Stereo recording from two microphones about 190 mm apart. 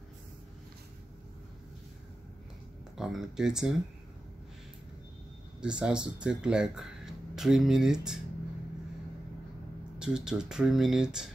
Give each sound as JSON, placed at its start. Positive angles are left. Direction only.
{"t": 3.0, "sound": "speech", "side_deg": 0}
{"t": 5.6, "sound": "speech", "side_deg": -5}
{"t": 9.9, "sound": "speech", "side_deg": -5}